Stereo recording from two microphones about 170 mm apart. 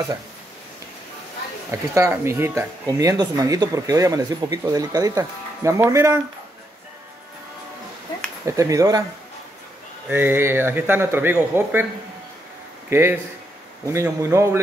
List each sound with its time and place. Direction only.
1.7 s speech: 15° right (ahead or behind)
8.5 s speech: 20° right (ahead or behind)
10.0 s speech: 10° right (ahead or behind)
12.9 s speech: 15° right (ahead or behind)